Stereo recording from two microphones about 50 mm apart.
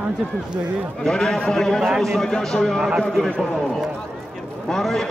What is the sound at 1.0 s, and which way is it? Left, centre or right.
A man's voice, centre.